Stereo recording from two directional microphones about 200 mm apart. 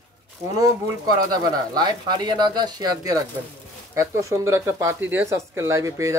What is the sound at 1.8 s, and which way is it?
Speech, 20° right (ahead or behind).